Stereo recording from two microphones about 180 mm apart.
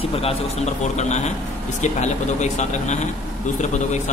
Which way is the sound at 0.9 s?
40° left (ahead or behind).